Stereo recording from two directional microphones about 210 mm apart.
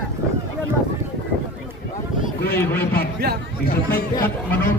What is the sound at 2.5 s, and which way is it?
Speech, 10° left (ahead or behind).